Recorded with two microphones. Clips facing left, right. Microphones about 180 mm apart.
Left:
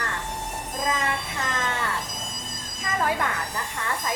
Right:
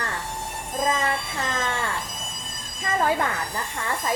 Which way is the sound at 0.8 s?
30° right (ahead or behind).